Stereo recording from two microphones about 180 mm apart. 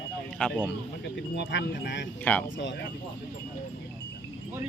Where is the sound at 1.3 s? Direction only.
80° left.